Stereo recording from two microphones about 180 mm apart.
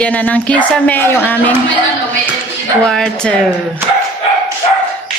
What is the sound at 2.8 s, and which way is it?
Speech, 5° left (ahead or behind).